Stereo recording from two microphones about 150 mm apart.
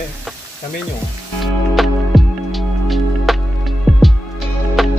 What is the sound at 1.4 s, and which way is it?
Music, centre (ahead or behind).